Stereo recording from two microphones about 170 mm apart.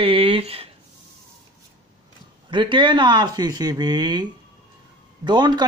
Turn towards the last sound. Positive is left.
turn(degrees=-25)  # may be behind; listen again after turning